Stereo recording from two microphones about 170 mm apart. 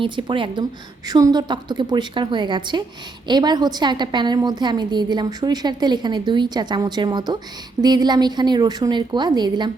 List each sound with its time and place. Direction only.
0.0 s a woman's voice: 30° right (ahead or behind)